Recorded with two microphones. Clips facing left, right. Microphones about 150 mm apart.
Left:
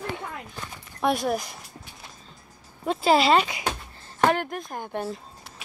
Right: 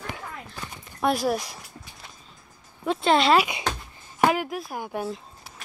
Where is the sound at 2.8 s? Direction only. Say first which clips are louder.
Left 1 dB; 5° left (ahead or behind).